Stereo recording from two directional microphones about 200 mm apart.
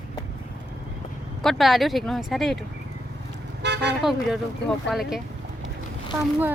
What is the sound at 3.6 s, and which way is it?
Speech, 60° right (ahead or behind).